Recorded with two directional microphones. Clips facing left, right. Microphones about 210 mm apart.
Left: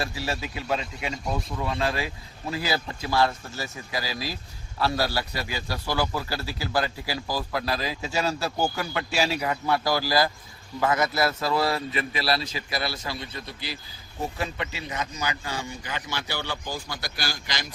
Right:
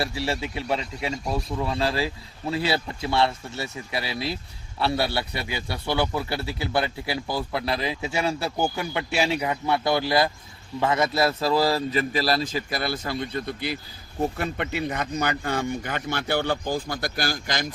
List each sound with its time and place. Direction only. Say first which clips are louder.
0.2 s a man's voice: right 3 dB; 25° right (ahead or behind); by 17.7 s 50° right (ahead or behind)